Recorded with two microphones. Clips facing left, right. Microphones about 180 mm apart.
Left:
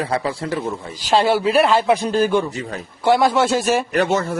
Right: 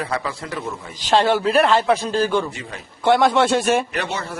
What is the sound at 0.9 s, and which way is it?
A man's voice, 10° left (ahead or behind).